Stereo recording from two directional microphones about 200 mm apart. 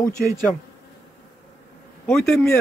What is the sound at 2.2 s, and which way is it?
Speech, 5° left (ahead or behind).